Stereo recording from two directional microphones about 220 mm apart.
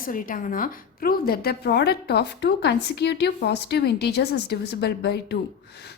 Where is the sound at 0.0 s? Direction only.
40° left (ahead or behind).